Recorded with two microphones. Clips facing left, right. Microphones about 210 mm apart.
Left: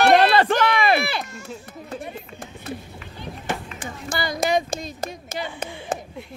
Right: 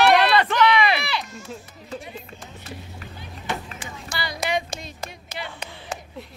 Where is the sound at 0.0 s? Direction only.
45° left (ahead or behind).